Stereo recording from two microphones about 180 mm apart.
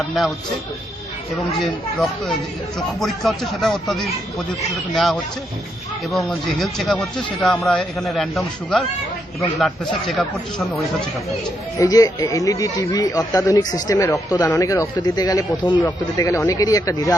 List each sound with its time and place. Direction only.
1.5 s speech: centre (ahead or behind)
11.8 s speech: 20° left (ahead or behind)